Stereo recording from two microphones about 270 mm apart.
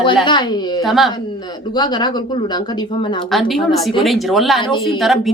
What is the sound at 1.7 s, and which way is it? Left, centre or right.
Speech, centre.